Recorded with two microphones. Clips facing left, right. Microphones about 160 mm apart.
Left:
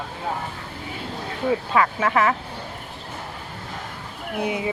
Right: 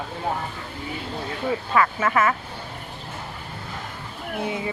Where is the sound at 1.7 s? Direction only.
15° left (ahead or behind).